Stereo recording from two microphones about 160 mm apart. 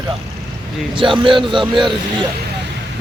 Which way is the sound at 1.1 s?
30° right (ahead or behind).